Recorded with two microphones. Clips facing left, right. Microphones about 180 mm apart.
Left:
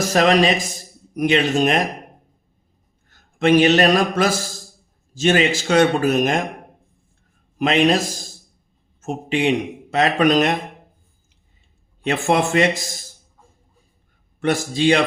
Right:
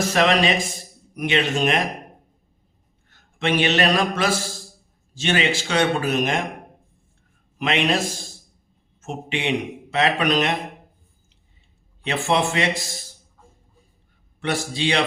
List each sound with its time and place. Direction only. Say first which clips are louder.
0.0 s a man's voice: left 3 dB; 40° left (ahead or behind)
3.1 s a man's voice: left 8 dB; 40° left (ahead or behind)
7.6 s a man's voice: left 5 dB; 40° left (ahead or behind)
12.0 s a man's voice: left 3 dB; 45° left (ahead or behind)
14.4 s a man's voice: left 6 dB; 45° left (ahead or behind)